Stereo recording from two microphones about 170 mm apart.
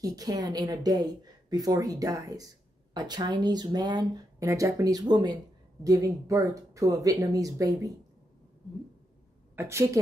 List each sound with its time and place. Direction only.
0.0 s speech: 20° right (ahead or behind)
9.6 s a woman's voice: 15° right (ahead or behind)